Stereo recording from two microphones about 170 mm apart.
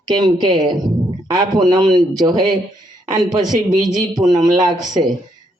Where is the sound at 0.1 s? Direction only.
25° right (ahead or behind).